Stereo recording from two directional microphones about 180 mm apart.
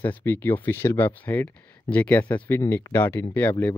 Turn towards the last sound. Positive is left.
turn(degrees=10)  # may be behind; listen again after turning